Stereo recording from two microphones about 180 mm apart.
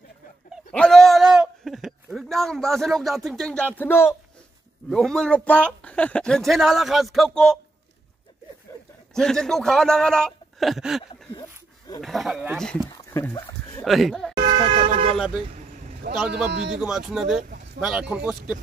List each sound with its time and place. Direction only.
0.7 s a sound: 5° left (ahead or behind)
4.8 s speech: 5° left (ahead or behind)
9.1 s speech: 5° left (ahead or behind)
12.9 s a sound: 15° left (ahead or behind)
13.8 s speech: centre (ahead or behind)
14.3 s vehicle: 25° right (ahead or behind)
15.5 s vehicle: 50° right (ahead or behind)
16.7 s speech: centre (ahead or behind)